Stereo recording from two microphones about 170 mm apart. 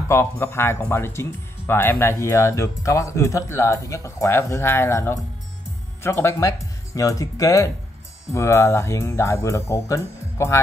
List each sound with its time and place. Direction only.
0.1 s speech: 15° left (ahead or behind)